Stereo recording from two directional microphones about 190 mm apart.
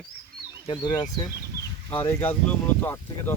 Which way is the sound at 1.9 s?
10° left (ahead or behind).